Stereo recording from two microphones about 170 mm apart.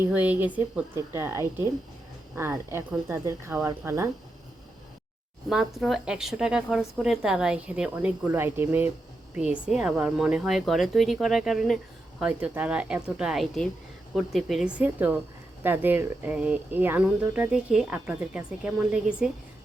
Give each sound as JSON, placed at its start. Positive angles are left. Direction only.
{"t": 0.1, "sound": "speech", "side_deg": -10}
{"t": 5.5, "sound": "a woman's voice", "side_deg": 0}